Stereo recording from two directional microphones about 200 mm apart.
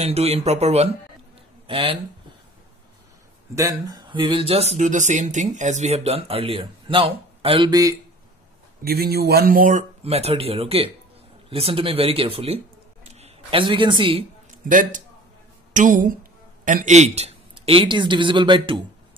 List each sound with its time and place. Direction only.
0.0 s speech: 30° right (ahead or behind)
3.5 s speech: 15° right (ahead or behind)
8.8 s speech: 50° right (ahead or behind); by 14.2 s 25° right (ahead or behind)
14.5 s a man's voice: 40° right (ahead or behind); by 18.8 s 25° right (ahead or behind)